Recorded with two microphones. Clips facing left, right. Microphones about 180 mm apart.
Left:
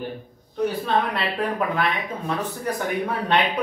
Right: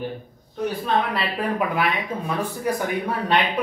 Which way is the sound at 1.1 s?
10° right (ahead or behind).